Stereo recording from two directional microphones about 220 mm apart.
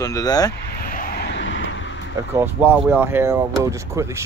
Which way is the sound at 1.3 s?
60° left (ahead or behind).